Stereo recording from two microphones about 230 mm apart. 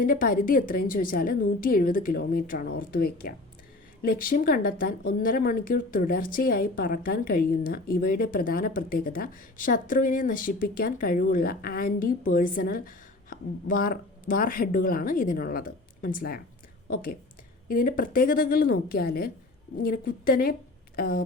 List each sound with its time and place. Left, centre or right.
0.0 s a woman's voice: left